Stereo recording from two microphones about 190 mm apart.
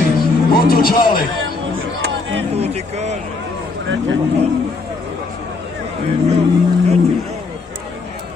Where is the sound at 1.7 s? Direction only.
70° right (ahead or behind).